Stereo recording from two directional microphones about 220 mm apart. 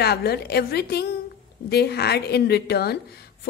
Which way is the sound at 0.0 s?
45° left (ahead or behind).